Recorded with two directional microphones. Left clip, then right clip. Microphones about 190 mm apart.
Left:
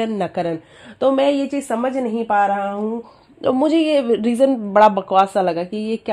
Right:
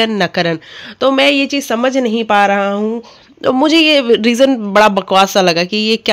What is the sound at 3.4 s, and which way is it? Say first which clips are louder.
Speech: right 6 dB; 20° right (ahead or behind).